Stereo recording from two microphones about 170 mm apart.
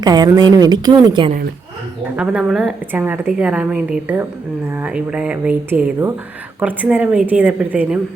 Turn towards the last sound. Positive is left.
turn(degrees=-5)  # may be behind; listen again after turning